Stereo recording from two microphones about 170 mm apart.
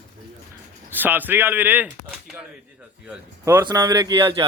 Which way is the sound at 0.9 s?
10° right (ahead or behind).